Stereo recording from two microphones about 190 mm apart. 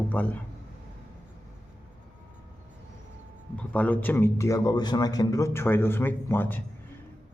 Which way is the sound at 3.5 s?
10° left (ahead or behind).